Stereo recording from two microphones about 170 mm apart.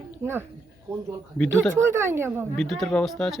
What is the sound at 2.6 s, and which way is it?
Speech, centre (ahead or behind).